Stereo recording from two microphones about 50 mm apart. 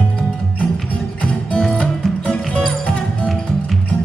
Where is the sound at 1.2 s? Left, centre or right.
Left.